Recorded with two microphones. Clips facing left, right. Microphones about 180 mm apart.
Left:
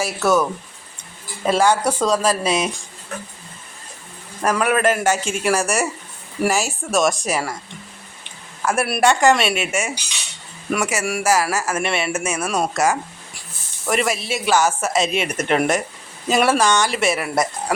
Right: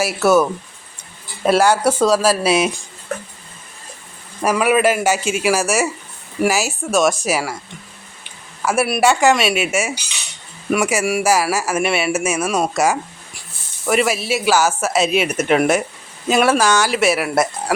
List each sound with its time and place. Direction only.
0.0 s speech: 10° right (ahead or behind)
1.5 s speech: 10° right (ahead or behind)
4.4 s speech: 5° right (ahead or behind)
8.6 s speech: 5° right (ahead or behind)